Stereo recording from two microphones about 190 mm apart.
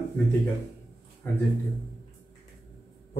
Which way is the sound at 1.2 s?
10° left (ahead or behind).